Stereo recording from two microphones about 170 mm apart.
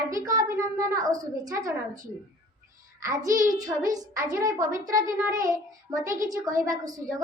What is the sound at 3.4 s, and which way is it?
Speech, 20° right (ahead or behind).